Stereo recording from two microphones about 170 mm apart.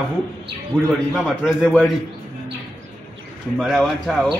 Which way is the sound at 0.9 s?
Centre (ahead or behind).